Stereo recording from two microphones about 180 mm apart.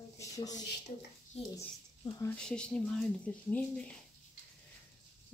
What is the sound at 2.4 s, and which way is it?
Speech, 5° left (ahead or behind).